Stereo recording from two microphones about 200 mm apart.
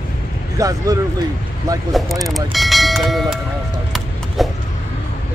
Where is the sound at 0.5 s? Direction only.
15° right (ahead or behind).